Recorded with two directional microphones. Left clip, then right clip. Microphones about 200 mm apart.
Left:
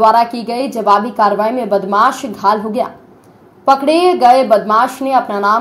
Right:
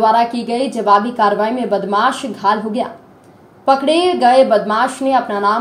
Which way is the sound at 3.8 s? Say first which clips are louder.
Left 5 dB; 5° left (ahead or behind).